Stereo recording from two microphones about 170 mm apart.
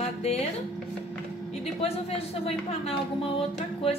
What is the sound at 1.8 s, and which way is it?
Speech, 35° left (ahead or behind).